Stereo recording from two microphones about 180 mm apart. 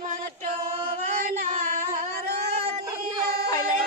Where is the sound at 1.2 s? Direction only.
45° right (ahead or behind).